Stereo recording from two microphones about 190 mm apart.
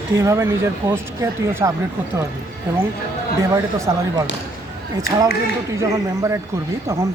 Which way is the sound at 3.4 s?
15° right (ahead or behind).